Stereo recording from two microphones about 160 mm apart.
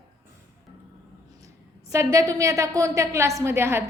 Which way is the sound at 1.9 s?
20° right (ahead or behind).